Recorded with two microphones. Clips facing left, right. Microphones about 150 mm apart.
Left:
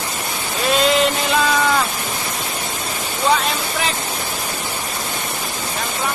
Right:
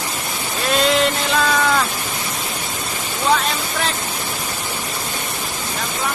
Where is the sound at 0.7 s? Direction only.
Centre (ahead or behind).